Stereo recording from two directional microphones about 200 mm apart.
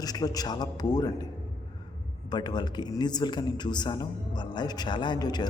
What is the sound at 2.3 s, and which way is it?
A man's voice, 20° left (ahead or behind).